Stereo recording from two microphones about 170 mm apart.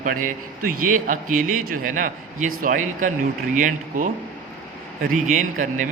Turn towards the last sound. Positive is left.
turn(degrees=-50)  # may be behind; listen again after turning